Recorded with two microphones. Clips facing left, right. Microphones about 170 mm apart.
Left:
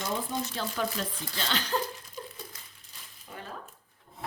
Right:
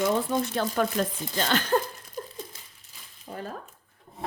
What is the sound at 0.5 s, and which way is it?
Speech, 55° right (ahead or behind).